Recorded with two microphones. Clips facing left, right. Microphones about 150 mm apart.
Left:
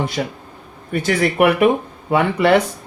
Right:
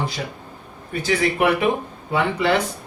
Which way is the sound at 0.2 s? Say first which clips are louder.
Left 6 dB; 60° left (ahead or behind).